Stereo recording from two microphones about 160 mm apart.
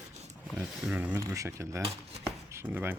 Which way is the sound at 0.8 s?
5° right (ahead or behind).